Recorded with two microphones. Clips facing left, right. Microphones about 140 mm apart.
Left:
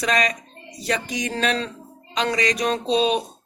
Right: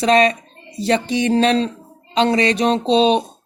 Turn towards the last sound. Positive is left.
turn(degrees=-25)  # may be behind; listen again after turning